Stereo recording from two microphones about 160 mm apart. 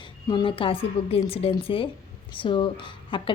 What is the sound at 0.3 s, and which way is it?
A woman's voice, 30° left (ahead or behind).